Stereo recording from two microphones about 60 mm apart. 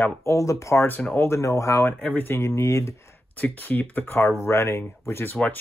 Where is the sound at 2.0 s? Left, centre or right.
Left.